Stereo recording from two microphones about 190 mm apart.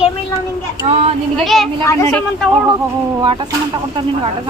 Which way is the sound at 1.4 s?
Centre (ahead or behind).